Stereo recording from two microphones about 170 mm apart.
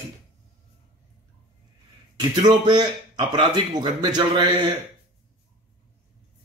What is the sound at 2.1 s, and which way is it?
A man's voice, 25° right (ahead or behind).